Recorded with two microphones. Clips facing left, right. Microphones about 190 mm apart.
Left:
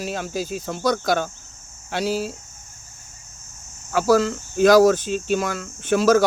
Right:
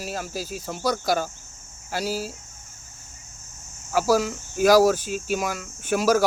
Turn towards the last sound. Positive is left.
turn(degrees=-10)  # may be behind; listen again after turning